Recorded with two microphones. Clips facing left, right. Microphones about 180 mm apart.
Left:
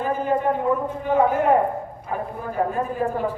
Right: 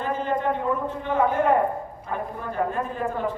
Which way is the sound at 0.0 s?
10° left (ahead or behind).